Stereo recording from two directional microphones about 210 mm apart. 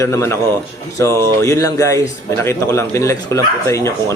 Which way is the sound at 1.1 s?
15° right (ahead or behind).